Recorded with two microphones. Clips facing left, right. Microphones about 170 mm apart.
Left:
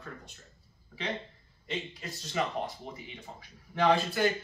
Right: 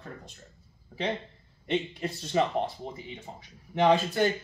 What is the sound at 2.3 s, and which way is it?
A man's voice, 30° right (ahead or behind).